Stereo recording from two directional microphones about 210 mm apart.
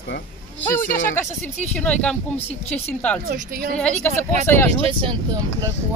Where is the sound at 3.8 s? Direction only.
10° left (ahead or behind).